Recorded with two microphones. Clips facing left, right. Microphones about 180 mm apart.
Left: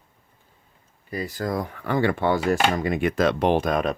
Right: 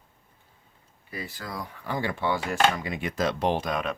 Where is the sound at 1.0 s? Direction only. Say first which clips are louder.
Left 10 dB; 40° left (ahead or behind).